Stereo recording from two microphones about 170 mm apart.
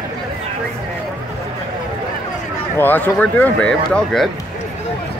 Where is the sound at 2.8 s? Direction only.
10° left (ahead or behind).